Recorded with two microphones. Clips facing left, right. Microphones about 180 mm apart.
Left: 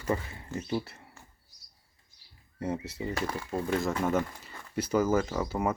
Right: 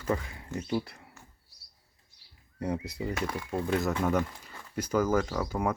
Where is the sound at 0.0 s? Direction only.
5° left (ahead or behind).